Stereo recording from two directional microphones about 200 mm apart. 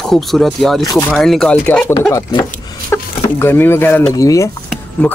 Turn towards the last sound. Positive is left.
turn(degrees=5)  # may be behind; listen again after turning